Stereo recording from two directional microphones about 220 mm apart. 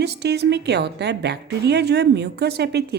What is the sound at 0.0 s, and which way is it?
A woman's voice, 50° right (ahead or behind).